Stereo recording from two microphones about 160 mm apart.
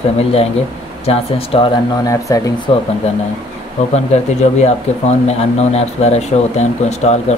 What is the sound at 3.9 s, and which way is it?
Speech, 45° left (ahead or behind).